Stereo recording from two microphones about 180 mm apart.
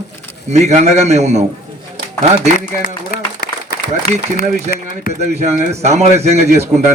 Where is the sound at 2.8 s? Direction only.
55° left (ahead or behind).